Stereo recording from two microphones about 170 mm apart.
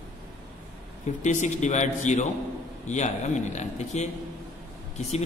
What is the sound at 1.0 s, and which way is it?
A man's voice, 45° left (ahead or behind).